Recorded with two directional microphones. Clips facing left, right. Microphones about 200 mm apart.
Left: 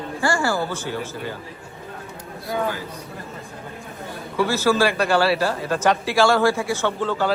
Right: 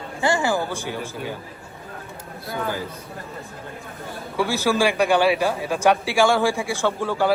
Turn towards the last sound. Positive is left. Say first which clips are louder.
# right 1 dB
turn(degrees=-10)  # may be behind; listen again after turning